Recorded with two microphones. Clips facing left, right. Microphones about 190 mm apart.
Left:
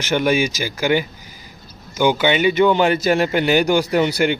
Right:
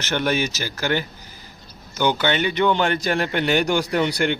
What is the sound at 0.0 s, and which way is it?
Speech, 10° left (ahead or behind).